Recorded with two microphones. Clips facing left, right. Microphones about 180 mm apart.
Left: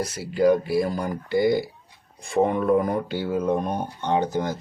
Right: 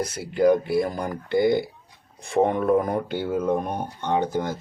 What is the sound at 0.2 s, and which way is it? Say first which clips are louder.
Speech: even; 55° right (ahead or behind).